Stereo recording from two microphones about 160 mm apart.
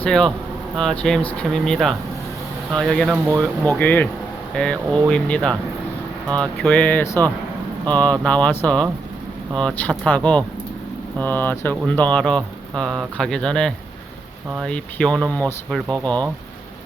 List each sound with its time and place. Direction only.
0.0 s speech: 5° left (ahead or behind)
3.1 s speech: 20° right (ahead or behind)
3.7 s speech: 10° left (ahead or behind)